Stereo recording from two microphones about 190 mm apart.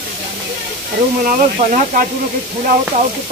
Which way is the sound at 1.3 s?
45° right (ahead or behind).